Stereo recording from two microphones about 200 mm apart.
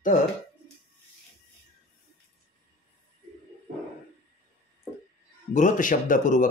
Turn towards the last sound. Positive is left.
turn(degrees=40)  # may be behind; listen again after turning